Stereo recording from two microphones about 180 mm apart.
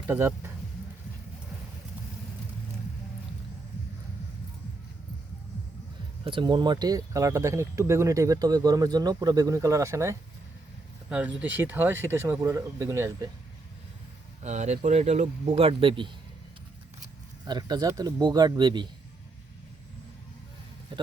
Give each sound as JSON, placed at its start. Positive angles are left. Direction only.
{"t": 0.1, "sound": "speech", "side_deg": -10}
{"t": 6.2, "sound": "speech", "side_deg": -25}
{"t": 14.4, "sound": "speech", "side_deg": -40}
{"t": 17.4, "sound": "speech", "side_deg": -20}
{"t": 20.9, "sound": "a man's voice", "side_deg": -25}